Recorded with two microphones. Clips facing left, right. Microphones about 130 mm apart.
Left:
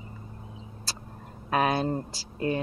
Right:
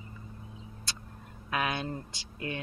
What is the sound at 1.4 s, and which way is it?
Speech, 35° left (ahead or behind).